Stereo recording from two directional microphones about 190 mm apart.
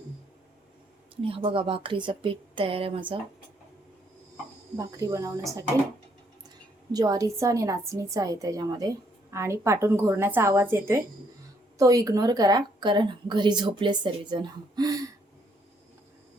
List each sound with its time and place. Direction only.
1.1 s a woman's voice: 30° right (ahead or behind)
4.8 s a woman's voice: 20° right (ahead or behind)
6.9 s a woman's voice: 20° right (ahead or behind)